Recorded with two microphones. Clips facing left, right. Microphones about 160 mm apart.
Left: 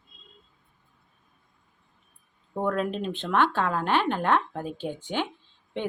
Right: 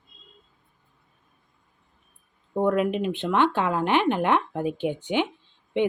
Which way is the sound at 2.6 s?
15° right (ahead or behind).